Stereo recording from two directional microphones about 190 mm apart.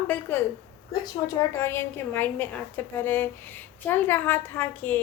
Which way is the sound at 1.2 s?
20° left (ahead or behind).